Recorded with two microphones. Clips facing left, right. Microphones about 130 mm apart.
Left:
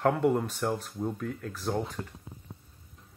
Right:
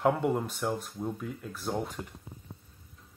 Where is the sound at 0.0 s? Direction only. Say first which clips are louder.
Left 2 dB; 5° right (ahead or behind).